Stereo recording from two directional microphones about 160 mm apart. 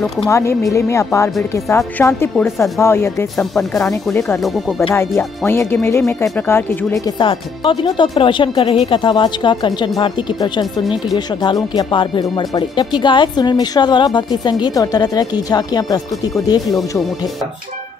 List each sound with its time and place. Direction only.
0.3 s speech: 15° left (ahead or behind)
3.3 s speech: 5° left (ahead or behind)
3.9 s speech: 15° left (ahead or behind)
4.4 s speech: centre (ahead or behind)
4.9 s speech: 15° left (ahead or behind)
7.1 s a woman's voice: 30° left (ahead or behind)